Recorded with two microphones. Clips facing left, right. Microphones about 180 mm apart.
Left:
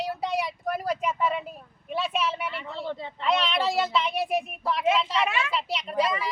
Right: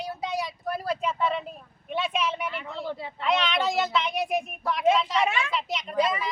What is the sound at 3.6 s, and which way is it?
Child singing, 35° left (ahead or behind).